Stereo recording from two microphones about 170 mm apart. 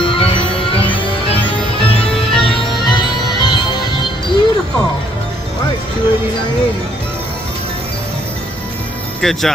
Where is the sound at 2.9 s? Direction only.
25° left (ahead or behind).